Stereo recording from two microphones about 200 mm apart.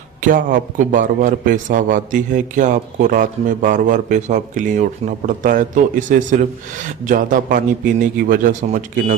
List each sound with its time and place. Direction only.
0.2 s a man's voice: 45° right (ahead or behind)